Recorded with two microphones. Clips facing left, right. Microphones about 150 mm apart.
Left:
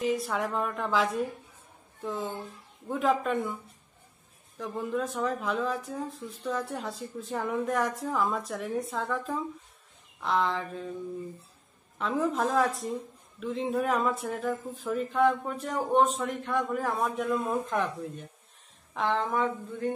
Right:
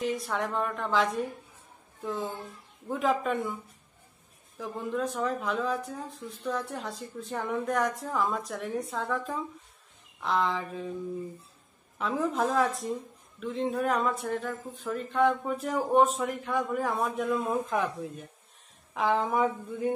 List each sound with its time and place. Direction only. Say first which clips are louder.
0.0 s speech: left 2 dB; centre (ahead or behind)
4.6 s speech: left 1 dB; centre (ahead or behind)
12.0 s speech: even; centre (ahead or behind)